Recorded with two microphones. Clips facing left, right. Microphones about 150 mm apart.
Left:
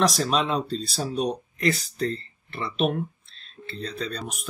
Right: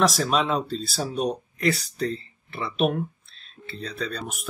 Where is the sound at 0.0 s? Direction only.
Centre (ahead or behind).